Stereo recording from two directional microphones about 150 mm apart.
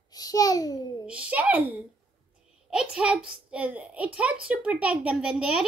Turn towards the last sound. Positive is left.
turn(degrees=-5)  # may be behind; listen again after turning